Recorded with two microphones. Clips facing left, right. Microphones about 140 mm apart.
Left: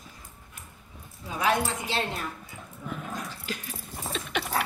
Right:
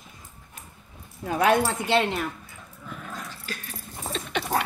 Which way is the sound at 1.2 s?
60° right (ahead or behind).